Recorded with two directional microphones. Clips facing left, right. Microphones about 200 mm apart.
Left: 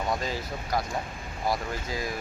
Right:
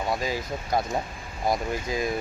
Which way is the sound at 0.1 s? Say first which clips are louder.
Right 3 dB; 10° right (ahead or behind).